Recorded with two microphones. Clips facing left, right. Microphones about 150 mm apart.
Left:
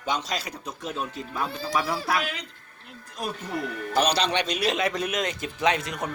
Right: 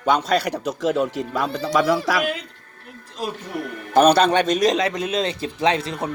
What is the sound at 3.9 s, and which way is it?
Speech, 50° right (ahead or behind).